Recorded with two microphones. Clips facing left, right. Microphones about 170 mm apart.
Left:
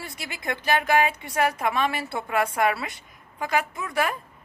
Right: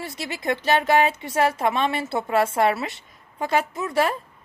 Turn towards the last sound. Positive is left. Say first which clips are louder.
# right 4 dB
turn(degrees=-25)  # may be behind; listen again after turning